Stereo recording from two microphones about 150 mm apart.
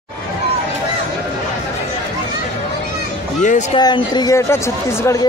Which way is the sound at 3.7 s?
30° left (ahead or behind).